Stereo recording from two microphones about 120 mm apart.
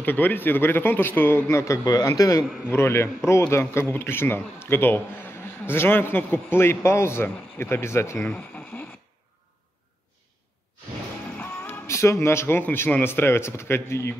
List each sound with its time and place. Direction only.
0.0 s a man's voice: 15° left (ahead or behind)
8.4 s a sound: 10° left (ahead or behind)
11.3 s speech: 20° left (ahead or behind)